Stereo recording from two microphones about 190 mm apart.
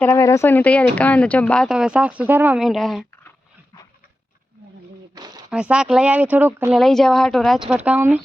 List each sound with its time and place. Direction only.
0.0 s speech: 15° left (ahead or behind)
5.1 s a sound: 20° right (ahead or behind)
5.5 s speech: 5° right (ahead or behind)
6.7 s speech: centre (ahead or behind)